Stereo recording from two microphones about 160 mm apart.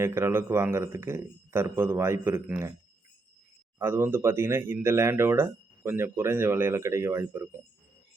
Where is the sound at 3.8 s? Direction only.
15° right (ahead or behind).